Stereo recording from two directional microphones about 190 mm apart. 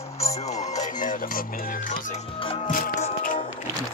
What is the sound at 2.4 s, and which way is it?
Music, 30° left (ahead or behind).